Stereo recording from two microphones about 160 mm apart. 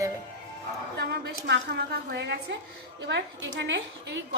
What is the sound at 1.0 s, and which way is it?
A woman's voice, 90° right.